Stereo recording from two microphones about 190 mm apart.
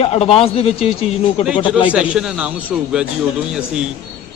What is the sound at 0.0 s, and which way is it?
Speech, 30° left (ahead or behind).